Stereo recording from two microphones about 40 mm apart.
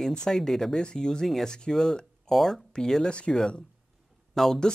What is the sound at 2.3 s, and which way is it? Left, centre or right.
Speech, centre.